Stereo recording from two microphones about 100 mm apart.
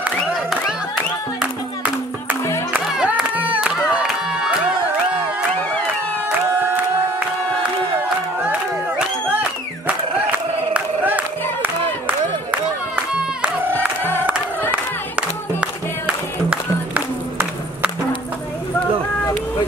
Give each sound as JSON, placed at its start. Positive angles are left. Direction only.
{"t": 0.3, "sound": "music", "side_deg": -5}
{"t": 8.5, "sound": "music", "side_deg": -15}
{"t": 12.4, "sound": "music", "side_deg": -10}
{"t": 13.7, "sound": "crowd", "side_deg": 20}
{"t": 14.7, "sound": "music", "side_deg": -10}